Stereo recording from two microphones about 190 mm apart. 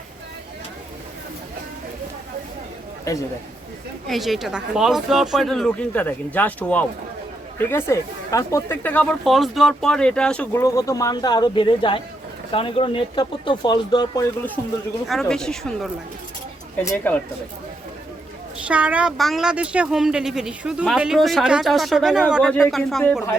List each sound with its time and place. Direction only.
3.1 s speech: 15° left (ahead or behind)
4.0 s speech: centre (ahead or behind); by 14.3 s 20° left (ahead or behind)
15.0 s speech: centre (ahead or behind)
18.7 s speech: 5° right (ahead or behind)